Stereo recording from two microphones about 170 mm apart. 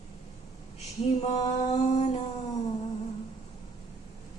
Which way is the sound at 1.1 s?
40° left (ahead or behind).